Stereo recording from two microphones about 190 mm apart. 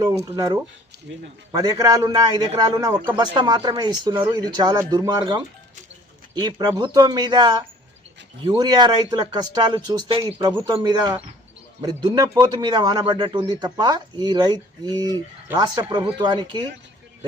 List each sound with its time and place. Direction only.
0.3 s a man's voice: 20° right (ahead or behind)
10.5 s a man's voice: 10° right (ahead or behind)